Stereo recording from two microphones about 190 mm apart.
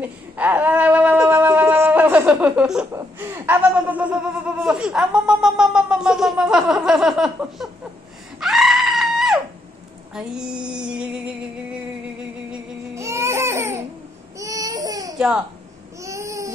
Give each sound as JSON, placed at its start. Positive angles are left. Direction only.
{"t": 0.4, "sound": "a sound", "side_deg": -10}
{"t": 2.9, "sound": "speech", "side_deg": -10}
{"t": 8.4, "sound": "goat", "side_deg": 0}
{"t": 10.1, "sound": "a sound", "side_deg": -5}
{"t": 12.9, "sound": "baby cry", "side_deg": -15}
{"t": 15.1, "sound": "a child's voice", "side_deg": -5}
{"t": 16.0, "sound": "baby cry", "side_deg": -15}